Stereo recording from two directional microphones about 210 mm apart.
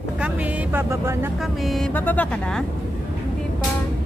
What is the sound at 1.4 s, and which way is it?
Speech, centre (ahead or behind).